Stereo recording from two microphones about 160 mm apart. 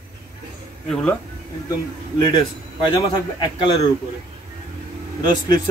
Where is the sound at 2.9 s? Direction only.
30° left (ahead or behind).